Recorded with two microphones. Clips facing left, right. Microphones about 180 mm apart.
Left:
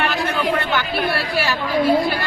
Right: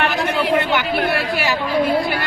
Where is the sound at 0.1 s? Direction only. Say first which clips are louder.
Right 2 dB; 20° right (ahead or behind).